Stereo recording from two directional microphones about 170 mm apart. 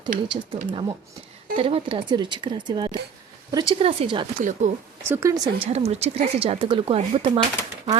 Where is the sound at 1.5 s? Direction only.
35° right (ahead or behind).